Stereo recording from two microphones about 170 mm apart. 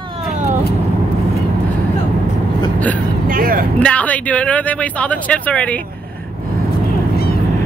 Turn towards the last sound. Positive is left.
turn(degrees=5)  # may be behind; listen again after turning